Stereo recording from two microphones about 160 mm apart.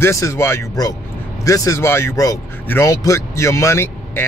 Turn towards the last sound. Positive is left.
turn(degrees=15)  # may be behind; listen again after turning